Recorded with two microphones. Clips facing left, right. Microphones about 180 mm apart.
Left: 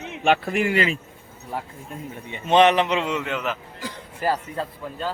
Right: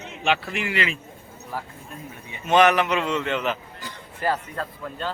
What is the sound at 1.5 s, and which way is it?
A man's voice, 25° left (ahead or behind).